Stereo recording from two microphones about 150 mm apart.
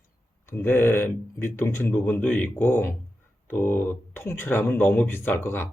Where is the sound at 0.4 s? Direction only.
15° left (ahead or behind).